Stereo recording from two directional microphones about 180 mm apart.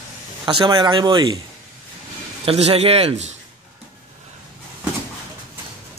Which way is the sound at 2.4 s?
35° right (ahead or behind).